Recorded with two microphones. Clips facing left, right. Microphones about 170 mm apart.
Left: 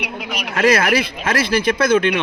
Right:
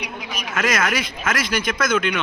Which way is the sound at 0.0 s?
65° left (ahead or behind).